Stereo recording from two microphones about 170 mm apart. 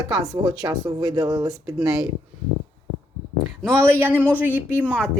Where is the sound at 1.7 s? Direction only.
5° right (ahead or behind).